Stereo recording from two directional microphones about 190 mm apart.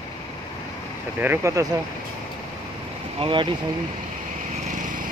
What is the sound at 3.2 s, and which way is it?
Speech, 25° right (ahead or behind).